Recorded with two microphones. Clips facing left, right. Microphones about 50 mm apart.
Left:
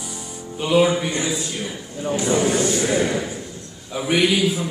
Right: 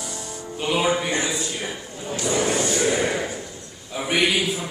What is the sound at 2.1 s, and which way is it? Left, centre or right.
Speech, centre.